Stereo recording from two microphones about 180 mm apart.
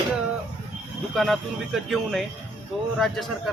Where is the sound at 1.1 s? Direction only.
Centre (ahead or behind).